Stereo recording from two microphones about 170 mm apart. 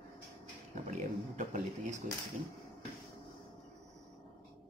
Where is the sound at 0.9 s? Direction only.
45° right (ahead or behind).